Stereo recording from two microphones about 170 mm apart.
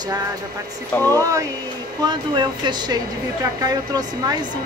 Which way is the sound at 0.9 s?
15° left (ahead or behind).